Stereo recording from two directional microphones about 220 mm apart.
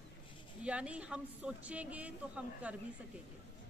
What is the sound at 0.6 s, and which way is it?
A man's voice, 5° right (ahead or behind).